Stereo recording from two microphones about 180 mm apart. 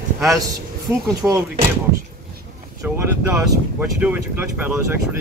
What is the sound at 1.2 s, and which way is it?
Speech, 20° right (ahead or behind).